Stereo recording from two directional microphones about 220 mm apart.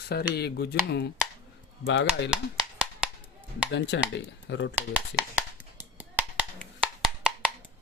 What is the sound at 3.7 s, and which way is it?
Speech, 55° left (ahead or behind).